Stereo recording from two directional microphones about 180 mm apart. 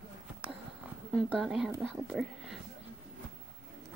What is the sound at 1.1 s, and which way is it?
Speech, centre (ahead or behind).